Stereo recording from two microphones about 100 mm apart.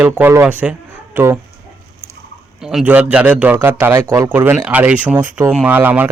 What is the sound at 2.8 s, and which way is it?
A man's voice, 15° right (ahead or behind).